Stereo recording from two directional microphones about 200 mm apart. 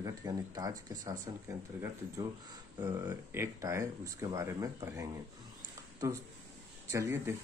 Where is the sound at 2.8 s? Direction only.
10° right (ahead or behind).